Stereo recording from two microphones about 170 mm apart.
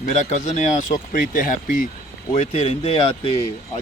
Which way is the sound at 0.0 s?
45° left (ahead or behind).